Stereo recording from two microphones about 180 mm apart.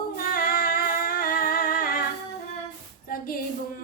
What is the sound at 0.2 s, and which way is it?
Singing, 55° left (ahead or behind).